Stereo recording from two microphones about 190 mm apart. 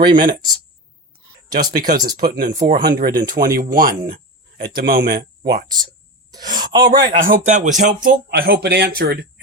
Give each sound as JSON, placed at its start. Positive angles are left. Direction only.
{"t": 0.0, "sound": "speech", "side_deg": -25}
{"t": 1.7, "sound": "speech", "side_deg": -50}
{"t": 5.6, "sound": "speech", "side_deg": -20}
{"t": 7.2, "sound": "speech", "side_deg": -40}